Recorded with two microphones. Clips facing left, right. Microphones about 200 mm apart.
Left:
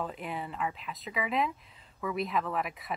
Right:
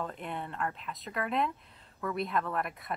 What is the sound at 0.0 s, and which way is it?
Speech, 5° left (ahead or behind).